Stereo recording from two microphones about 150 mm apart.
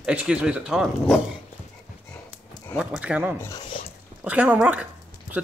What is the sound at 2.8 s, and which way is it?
Speech, 5° right (ahead or behind).